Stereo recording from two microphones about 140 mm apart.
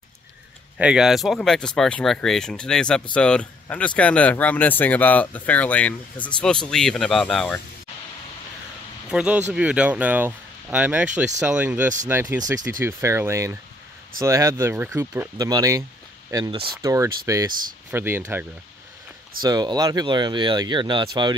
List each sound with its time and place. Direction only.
0.7 s speech: 5° right (ahead or behind)
9.1 s speech: 5° right (ahead or behind)
19.4 s speech: 30° right (ahead or behind)